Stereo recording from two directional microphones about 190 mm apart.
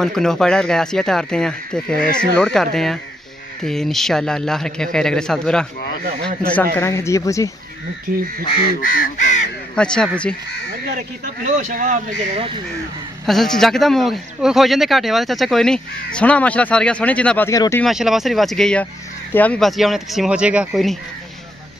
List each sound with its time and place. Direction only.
0.0 s speech: centre (ahead or behind)
8.8 s speech: 45° left (ahead or behind)
9.8 s speech: 5° left (ahead or behind)
11.4 s a man's voice: 40° right (ahead or behind)
13.2 s speech: centre (ahead or behind)
17.8 s speech: centre (ahead or behind)